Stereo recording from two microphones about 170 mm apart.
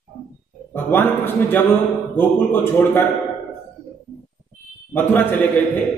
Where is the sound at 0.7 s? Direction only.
10° left (ahead or behind).